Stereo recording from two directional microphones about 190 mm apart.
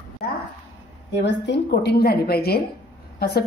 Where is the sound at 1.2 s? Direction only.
65° left (ahead or behind).